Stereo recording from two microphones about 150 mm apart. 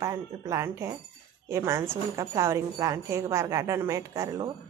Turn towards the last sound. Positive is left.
turn(degrees=-25)  # may be behind; listen again after turning